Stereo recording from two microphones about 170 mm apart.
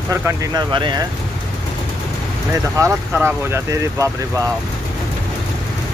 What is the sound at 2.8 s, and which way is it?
Speech, 15° right (ahead or behind).